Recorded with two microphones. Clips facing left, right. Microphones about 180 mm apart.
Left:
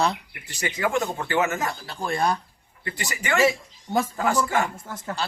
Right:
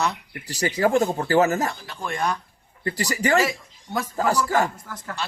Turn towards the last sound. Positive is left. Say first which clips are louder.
# left 2 dB
turn(degrees=25)  # may be behind; listen again after turning